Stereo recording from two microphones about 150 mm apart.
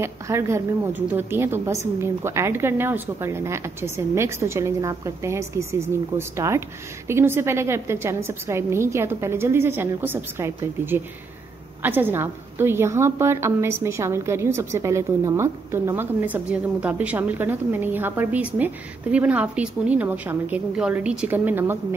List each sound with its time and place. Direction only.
0.0 s a woman's voice: 20° right (ahead or behind)